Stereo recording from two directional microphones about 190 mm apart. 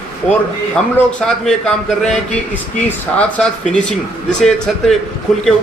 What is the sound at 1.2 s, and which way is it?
A man's voice, centre (ahead or behind).